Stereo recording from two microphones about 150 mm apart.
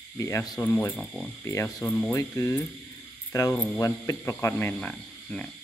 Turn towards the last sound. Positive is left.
turn(degrees=5)  # may be behind; listen again after turning